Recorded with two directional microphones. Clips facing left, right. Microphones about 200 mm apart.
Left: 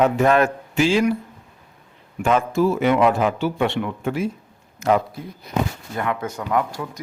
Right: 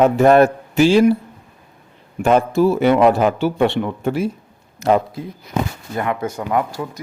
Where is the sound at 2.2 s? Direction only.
35° right (ahead or behind).